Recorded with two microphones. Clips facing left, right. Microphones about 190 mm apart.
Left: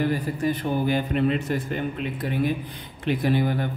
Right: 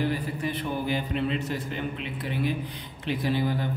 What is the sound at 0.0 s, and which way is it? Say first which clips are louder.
A man's voice: left 4 dB; 45° left (ahead or behind).